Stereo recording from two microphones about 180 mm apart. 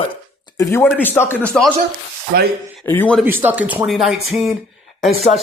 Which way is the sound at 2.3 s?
60° right (ahead or behind).